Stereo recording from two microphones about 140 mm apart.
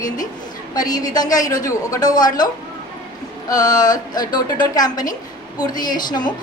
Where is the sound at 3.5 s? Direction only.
25° left (ahead or behind).